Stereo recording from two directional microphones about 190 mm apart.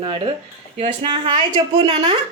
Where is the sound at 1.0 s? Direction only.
25° right (ahead or behind).